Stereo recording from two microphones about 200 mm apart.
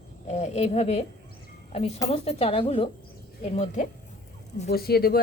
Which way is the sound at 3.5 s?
40° left (ahead or behind).